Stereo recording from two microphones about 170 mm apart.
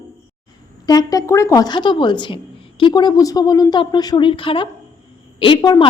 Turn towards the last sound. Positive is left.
turn(degrees=25)  # may be behind; listen again after turning